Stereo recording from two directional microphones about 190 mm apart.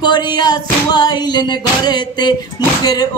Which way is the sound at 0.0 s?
20° left (ahead or behind).